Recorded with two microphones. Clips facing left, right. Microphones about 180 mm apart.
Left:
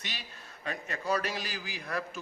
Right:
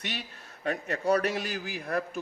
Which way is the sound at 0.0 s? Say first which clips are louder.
Right 6 dB; 60° right (ahead or behind).